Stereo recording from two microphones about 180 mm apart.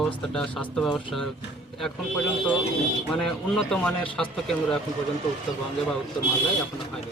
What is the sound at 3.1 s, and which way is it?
Speech, centre (ahead or behind).